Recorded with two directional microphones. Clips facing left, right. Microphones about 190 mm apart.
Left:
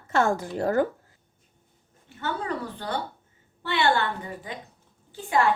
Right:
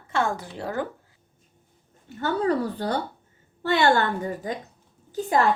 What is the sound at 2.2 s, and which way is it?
A woman's voice, 40° right (ahead or behind).